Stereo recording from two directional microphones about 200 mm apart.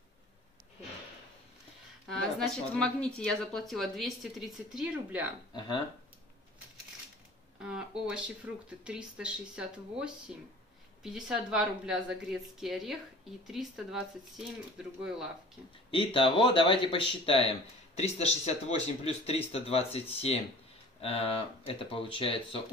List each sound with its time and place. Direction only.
2.0 s speech: centre (ahead or behind)
5.5 s speech: 20° left (ahead or behind)
8.1 s speech: 5° right (ahead or behind)
15.9 s speech: 25° left (ahead or behind)